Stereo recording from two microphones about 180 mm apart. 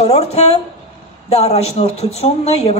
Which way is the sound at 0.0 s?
35° left (ahead or behind).